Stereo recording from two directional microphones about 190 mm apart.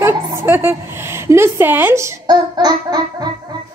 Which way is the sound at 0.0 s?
10° right (ahead or behind).